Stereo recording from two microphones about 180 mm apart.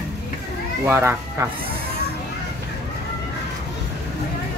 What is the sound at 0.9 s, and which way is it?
Speech, 15° right (ahead or behind).